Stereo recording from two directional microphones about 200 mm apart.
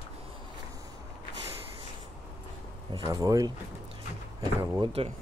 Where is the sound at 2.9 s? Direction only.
20° right (ahead or behind).